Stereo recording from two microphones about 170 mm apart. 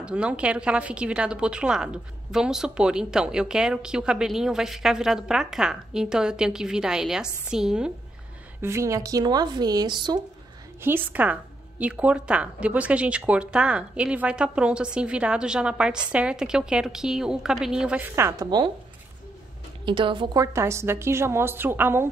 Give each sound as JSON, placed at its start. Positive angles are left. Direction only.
{"t": 0.0, "sound": "a woman's voice", "side_deg": -5}
{"t": 8.5, "sound": "speech", "side_deg": -15}
{"t": 10.8, "sound": "a woman's voice", "side_deg": -10}
{"t": 19.8, "sound": "speech", "side_deg": -30}
{"t": 20.5, "sound": "a woman's voice", "side_deg": -15}